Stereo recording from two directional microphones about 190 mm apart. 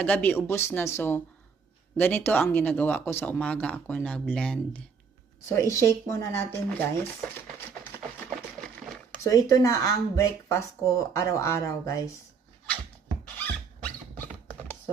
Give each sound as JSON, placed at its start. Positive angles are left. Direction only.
{"t": 0.0, "sound": "speech", "side_deg": 10}
{"t": 9.3, "sound": "speech", "side_deg": 15}
{"t": 13.2, "sound": "squeak", "side_deg": 10}